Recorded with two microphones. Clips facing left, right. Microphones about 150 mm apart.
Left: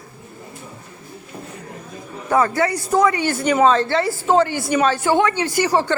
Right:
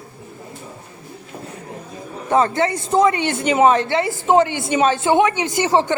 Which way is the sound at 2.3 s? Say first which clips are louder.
Right 1 dB; 25° right (ahead or behind).